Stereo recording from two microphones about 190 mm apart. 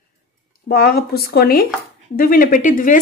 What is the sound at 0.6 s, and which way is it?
A woman's voice, 55° left (ahead or behind).